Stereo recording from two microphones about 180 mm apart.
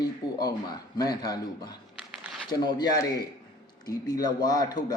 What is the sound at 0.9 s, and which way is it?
A man's voice, 20° left (ahead or behind).